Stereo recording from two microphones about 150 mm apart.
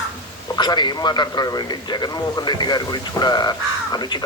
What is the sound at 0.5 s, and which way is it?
A man's voice, 30° left (ahead or behind).